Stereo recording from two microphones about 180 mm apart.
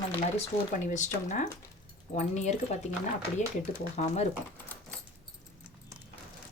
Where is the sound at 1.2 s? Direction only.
40° left (ahead or behind).